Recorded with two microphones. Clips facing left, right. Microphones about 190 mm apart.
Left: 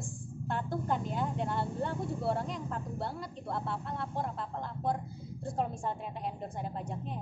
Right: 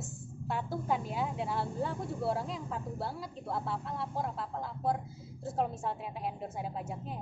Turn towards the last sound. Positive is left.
turn(degrees=-5)  # may be behind; listen again after turning